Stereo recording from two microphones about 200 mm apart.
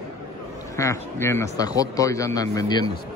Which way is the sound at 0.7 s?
15° left (ahead or behind).